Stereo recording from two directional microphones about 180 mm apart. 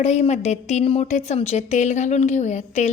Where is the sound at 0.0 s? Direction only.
40° left (ahead or behind).